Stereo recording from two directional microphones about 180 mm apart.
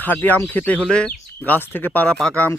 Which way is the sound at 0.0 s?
10° left (ahead or behind).